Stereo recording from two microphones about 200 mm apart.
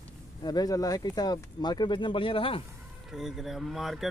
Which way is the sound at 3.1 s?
Centre (ahead or behind).